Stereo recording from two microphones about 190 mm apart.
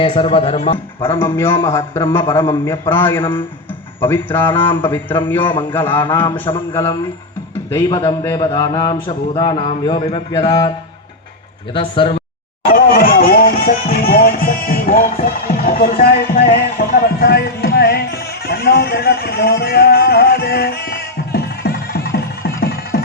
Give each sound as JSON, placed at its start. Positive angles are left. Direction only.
{"t": 0.0, "sound": "a man's voice", "side_deg": 30}
{"t": 1.0, "sound": "a man's voice", "side_deg": 10}
{"t": 12.7, "sound": "music", "side_deg": 50}